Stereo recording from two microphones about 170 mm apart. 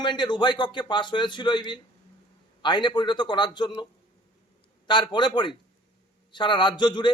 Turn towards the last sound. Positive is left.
turn(degrees=25)  # may be behind; listen again after turning